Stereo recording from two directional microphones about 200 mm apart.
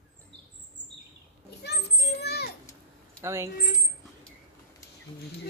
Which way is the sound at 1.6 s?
55° left (ahead or behind).